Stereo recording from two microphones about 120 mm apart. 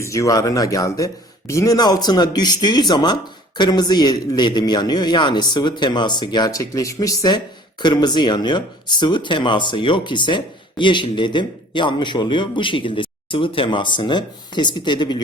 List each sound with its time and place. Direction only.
0.0 s a man's voice: 25° left (ahead or behind)